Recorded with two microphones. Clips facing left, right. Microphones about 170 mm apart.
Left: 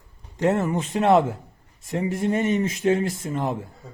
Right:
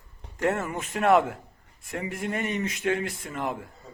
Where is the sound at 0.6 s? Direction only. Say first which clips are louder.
Left 3 dB; 30° left (ahead or behind).